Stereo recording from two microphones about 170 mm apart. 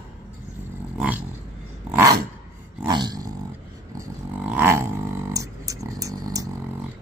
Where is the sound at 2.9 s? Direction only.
25° right (ahead or behind).